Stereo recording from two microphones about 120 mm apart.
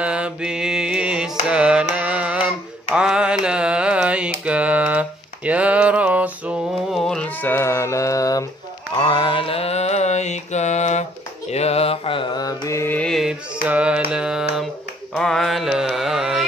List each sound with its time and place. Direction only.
0.0 s mantra: 10° right (ahead or behind)
1.5 s music: 10° right (ahead or behind)
7.0 s a sound: 5° left (ahead or behind); by 8.5 s 30° left (ahead or behind)
9.0 s mantra: 45° left (ahead or behind); by 11.1 s 75° left (ahead or behind)
11.5 s mantra: 60° left (ahead or behind); by 12.9 s 25° left (ahead or behind)
12.9 s music: 10° left (ahead or behind)
13.2 s music: 10° right (ahead or behind)
14.1 s mantra: 5° right (ahead or behind)
15.1 s mantra: 5° left (ahead or behind)